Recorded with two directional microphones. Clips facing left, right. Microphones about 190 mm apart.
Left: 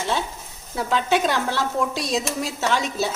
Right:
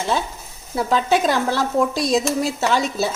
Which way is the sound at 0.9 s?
40° right (ahead or behind).